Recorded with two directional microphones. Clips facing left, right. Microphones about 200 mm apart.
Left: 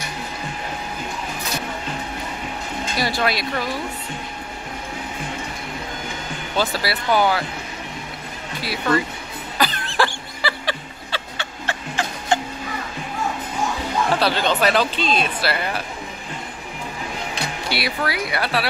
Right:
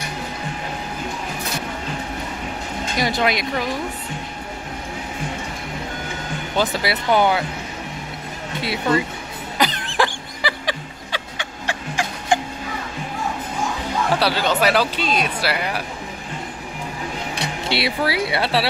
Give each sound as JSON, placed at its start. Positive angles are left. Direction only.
{"t": 3.0, "sound": "speech", "side_deg": -20}
{"t": 6.5, "sound": "speech", "side_deg": -20}
{"t": 8.5, "sound": "speech", "side_deg": -20}
{"t": 9.6, "sound": "music", "side_deg": -20}
{"t": 14.2, "sound": "speech", "side_deg": -10}
{"t": 17.6, "sound": "speech", "side_deg": -25}